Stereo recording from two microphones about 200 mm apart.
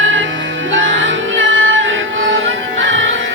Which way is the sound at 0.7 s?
70° right (ahead or behind).